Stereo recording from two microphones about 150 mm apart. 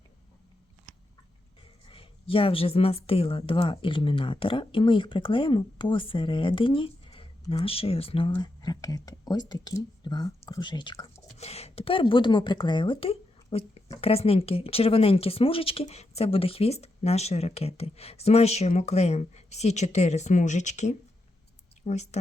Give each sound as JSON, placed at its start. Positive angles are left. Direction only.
{"t": 1.9, "sound": "a woman's voice", "side_deg": 35}
{"t": 11.3, "sound": "speech", "side_deg": 45}